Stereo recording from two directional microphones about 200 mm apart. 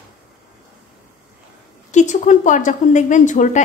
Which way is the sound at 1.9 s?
40° left (ahead or behind).